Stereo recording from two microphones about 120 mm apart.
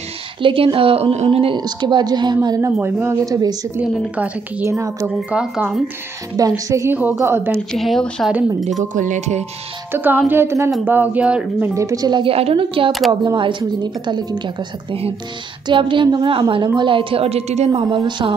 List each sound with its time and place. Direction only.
0.4 s a woman's voice: 45° right (ahead or behind)
1.6 s speech: 40° right (ahead or behind)
2.8 s a woman's voice: 20° right (ahead or behind)
4.6 s speech: 25° right (ahead or behind)
5.3 s a woman's voice: 10° right (ahead or behind)
6.3 s speech: 30° right (ahead or behind)
7.7 s speech: centre (ahead or behind)
8.7 s speech: 90° right
9.9 s a woman's voice: 15° right (ahead or behind)
11.7 s a woman's voice: 30° right (ahead or behind); by 12.9 s 50° right (ahead or behind)
13.1 s speech: 40° right (ahead or behind)
14.4 s a woman's voice: 50° right (ahead or behind)